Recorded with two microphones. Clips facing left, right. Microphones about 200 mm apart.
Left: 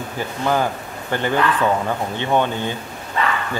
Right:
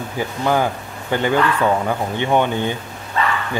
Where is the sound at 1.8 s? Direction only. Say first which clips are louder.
Right 2 dB; 15° right (ahead or behind).